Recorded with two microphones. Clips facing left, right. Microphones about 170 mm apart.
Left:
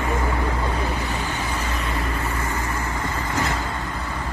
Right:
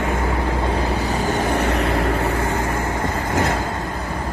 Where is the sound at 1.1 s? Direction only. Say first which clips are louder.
Right 7 dB; 40° right (ahead or behind).